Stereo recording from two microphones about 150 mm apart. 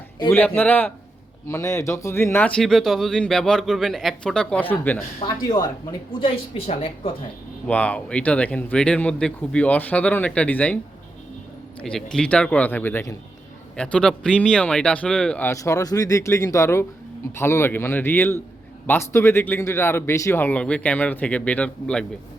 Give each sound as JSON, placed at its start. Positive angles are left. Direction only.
{"t": 0.3, "sound": "speech", "side_deg": 10}
{"t": 2.6, "sound": "speech", "side_deg": 5}
{"t": 5.2, "sound": "a woman's voice", "side_deg": 25}
{"t": 7.7, "sound": "speech", "side_deg": 10}
{"t": 11.8, "sound": "speech", "side_deg": 5}
{"t": 15.5, "sound": "speech", "side_deg": 20}